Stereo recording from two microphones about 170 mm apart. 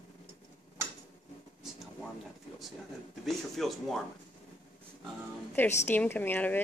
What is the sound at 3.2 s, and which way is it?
Speech, centre (ahead or behind).